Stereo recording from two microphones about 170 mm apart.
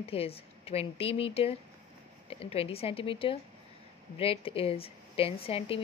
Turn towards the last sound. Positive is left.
turn(degrees=35)  # may be behind; listen again after turning